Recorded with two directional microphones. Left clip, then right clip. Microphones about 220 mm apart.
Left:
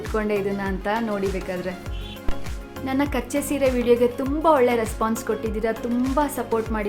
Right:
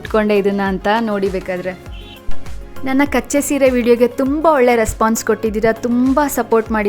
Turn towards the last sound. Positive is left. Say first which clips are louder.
# right 9 dB
turn(degrees=-40)  # may be behind; listen again after turning